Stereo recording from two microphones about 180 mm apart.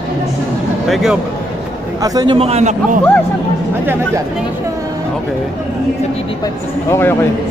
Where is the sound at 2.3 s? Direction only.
35° right (ahead or behind).